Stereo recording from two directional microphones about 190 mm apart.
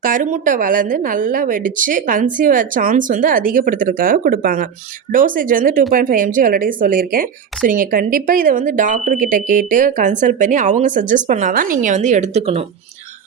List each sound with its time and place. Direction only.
0.0 s speech: 45° right (ahead or behind)